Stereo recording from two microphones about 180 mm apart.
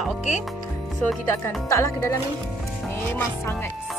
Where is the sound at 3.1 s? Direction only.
10° left (ahead or behind).